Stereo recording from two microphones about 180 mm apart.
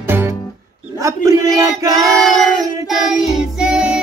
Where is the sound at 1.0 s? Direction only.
15° right (ahead or behind).